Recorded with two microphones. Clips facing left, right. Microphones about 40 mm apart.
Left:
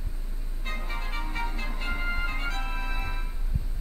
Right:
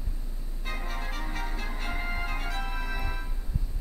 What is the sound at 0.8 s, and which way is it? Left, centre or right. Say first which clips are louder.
Music: even; left.